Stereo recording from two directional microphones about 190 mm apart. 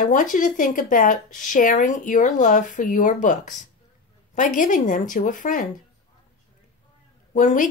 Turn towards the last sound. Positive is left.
turn(degrees=40)  # may be behind; listen again after turning